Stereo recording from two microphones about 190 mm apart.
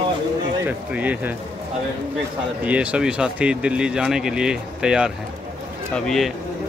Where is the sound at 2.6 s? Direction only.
5° right (ahead or behind).